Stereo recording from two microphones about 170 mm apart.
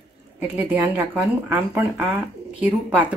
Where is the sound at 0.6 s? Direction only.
10° right (ahead or behind).